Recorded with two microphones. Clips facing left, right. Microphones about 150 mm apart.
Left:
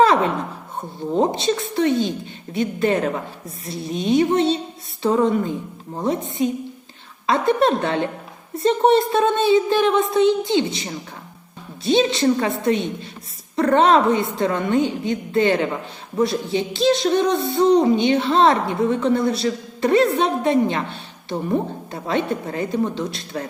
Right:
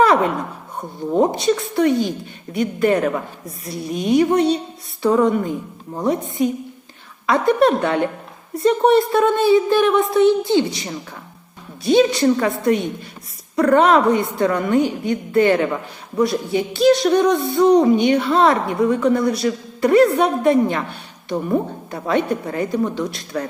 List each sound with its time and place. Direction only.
0.0 s a woman's voice: 25° left (ahead or behind)